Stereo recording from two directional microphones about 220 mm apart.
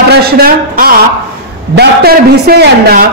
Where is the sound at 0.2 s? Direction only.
45° right (ahead or behind).